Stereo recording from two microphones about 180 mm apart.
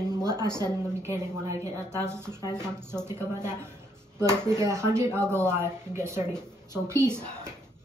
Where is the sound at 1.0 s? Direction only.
15° right (ahead or behind).